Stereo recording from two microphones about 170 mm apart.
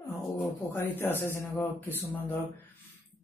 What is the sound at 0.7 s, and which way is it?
Speech, 10° left (ahead or behind).